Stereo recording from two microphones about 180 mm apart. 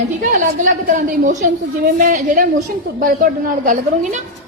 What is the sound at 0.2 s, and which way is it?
A woman's voice, 50° right (ahead or behind).